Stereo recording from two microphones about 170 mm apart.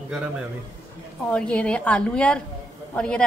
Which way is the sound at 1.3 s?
5° left (ahead or behind).